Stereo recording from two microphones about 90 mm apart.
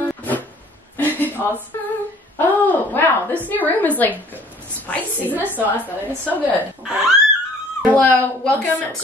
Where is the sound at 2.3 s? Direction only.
20° left (ahead or behind).